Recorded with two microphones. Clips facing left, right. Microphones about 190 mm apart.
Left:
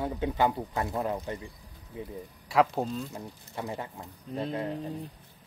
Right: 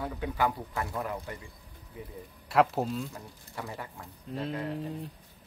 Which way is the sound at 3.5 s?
20° left (ahead or behind).